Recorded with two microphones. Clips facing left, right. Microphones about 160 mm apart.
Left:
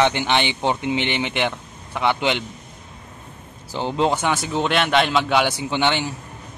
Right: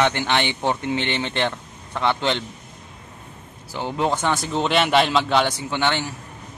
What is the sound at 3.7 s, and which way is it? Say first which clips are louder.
Speech: left 3 dB; 25° left (ahead or behind).